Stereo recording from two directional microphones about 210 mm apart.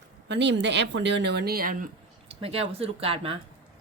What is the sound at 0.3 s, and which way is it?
Speech, 55° right (ahead or behind).